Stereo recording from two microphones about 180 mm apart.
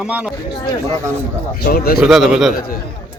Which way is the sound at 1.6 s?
60° left (ahead or behind).